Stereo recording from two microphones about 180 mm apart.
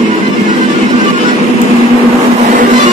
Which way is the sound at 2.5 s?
45° right (ahead or behind).